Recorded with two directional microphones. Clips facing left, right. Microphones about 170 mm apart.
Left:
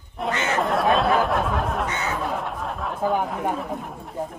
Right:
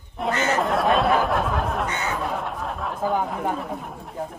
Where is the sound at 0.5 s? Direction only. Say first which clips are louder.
Left 1 dB; centre (ahead or behind).